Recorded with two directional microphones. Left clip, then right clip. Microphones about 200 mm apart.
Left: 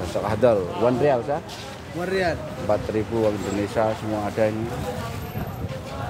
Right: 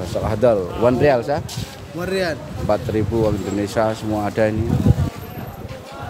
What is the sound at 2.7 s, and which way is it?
Speech, 25° right (ahead or behind).